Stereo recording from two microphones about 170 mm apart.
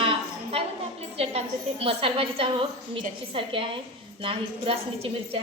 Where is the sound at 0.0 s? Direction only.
30° right (ahead or behind).